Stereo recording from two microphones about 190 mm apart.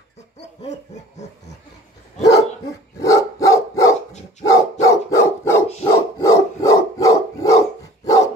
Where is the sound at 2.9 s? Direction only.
15° left (ahead or behind).